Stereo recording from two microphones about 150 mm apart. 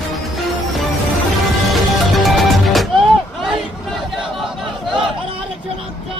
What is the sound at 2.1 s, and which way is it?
Music, centre (ahead or behind).